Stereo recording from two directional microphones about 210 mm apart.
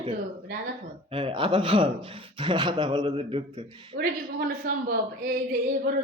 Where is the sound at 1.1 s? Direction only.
25° right (ahead or behind).